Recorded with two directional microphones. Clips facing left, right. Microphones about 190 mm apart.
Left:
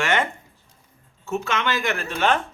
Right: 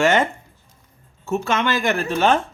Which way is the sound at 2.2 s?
40° right (ahead or behind).